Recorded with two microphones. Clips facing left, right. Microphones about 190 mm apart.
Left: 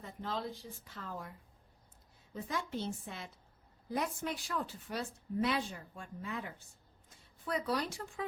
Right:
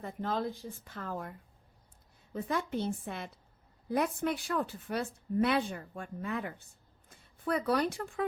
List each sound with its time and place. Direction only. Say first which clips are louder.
0.0 s a woman's voice: right 6 dB; 55° right (ahead or behind)
2.3 s a woman's voice: right 5 dB; 60° right (ahead or behind)